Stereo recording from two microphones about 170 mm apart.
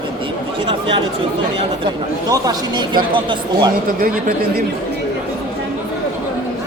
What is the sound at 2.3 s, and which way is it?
A man's voice, 25° right (ahead or behind).